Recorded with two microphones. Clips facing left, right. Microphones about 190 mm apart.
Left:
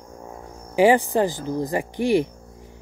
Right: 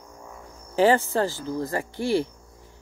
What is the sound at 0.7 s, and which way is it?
Speech, 15° left (ahead or behind).